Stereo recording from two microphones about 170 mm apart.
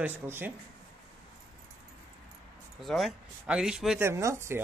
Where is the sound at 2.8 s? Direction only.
Centre (ahead or behind).